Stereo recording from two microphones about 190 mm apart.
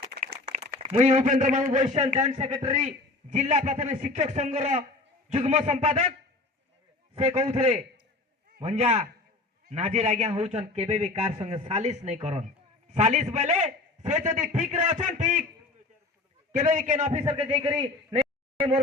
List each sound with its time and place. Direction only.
0.1 s a sound: 60° right (ahead or behind)
0.5 s a man's voice: 35° right (ahead or behind)
7.2 s a man's voice: 35° right (ahead or behind)
16.5 s a man's voice: 40° right (ahead or behind)